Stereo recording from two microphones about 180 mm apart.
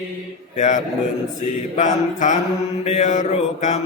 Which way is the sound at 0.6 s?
45° left (ahead or behind).